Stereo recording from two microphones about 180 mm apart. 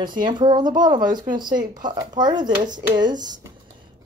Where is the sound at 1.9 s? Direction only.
25° right (ahead or behind).